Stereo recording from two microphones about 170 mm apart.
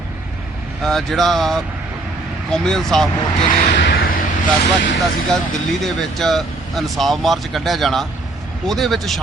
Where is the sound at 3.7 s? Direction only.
80° left.